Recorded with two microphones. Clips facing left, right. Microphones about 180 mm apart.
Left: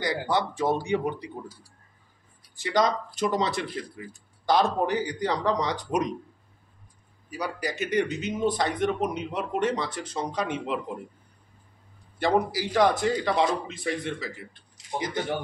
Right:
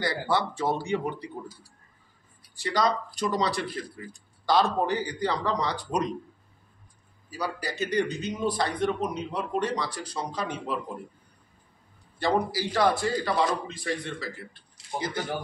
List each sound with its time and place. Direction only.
0.0 s a man's voice: 20° left (ahead or behind)
2.5 s a man's voice: 20° left (ahead or behind)
7.6 s a man's voice: 20° left (ahead or behind)
12.2 s a man's voice: 20° left (ahead or behind)